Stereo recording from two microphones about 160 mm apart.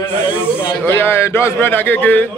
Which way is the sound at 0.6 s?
15° left (ahead or behind).